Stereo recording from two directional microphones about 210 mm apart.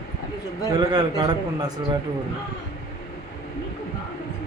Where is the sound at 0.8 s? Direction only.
20° right (ahead or behind).